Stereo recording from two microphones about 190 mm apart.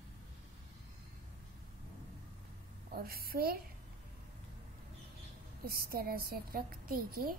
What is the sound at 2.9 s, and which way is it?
Child singing, 50° right (ahead or behind).